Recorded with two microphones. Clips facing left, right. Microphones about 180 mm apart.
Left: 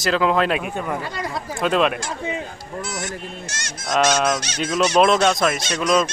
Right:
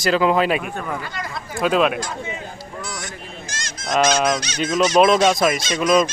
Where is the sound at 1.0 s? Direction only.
30° left (ahead or behind).